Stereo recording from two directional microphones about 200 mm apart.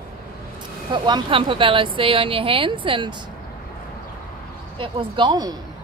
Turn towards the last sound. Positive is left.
turn(degrees=-20)  # may be behind; listen again after turning